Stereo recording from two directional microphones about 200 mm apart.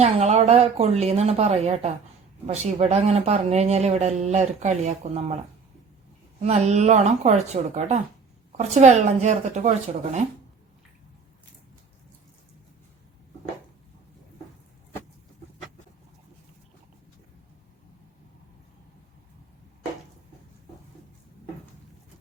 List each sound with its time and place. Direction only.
0.0 s speech: 35° right (ahead or behind)
6.4 s speech: 35° right (ahead or behind)